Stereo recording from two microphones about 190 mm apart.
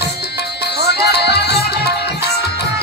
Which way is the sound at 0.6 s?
60° left (ahead or behind).